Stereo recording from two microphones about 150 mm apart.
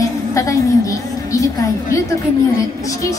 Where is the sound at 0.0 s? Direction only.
20° left (ahead or behind).